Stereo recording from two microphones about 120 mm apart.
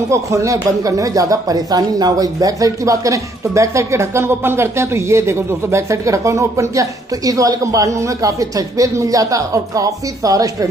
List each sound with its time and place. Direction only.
0.1 s speech: 25° right (ahead or behind)